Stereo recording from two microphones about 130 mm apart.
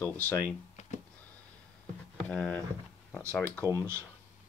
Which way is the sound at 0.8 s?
60° left (ahead or behind).